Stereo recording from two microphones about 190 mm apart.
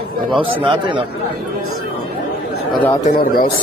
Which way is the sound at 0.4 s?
25° right (ahead or behind).